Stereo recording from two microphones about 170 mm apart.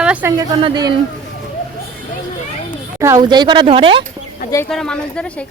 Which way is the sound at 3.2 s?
25° right (ahead or behind).